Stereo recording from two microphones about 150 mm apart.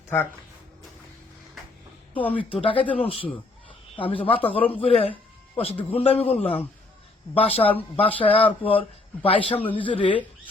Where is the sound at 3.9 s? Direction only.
35° left (ahead or behind).